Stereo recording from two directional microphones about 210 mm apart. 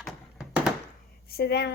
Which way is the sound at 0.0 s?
Centre (ahead or behind).